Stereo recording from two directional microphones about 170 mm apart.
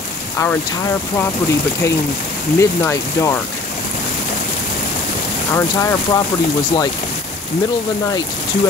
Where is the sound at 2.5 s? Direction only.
15° left (ahead or behind).